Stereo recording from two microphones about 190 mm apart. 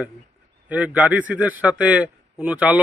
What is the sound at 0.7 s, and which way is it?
A man's voice, 10° right (ahead or behind).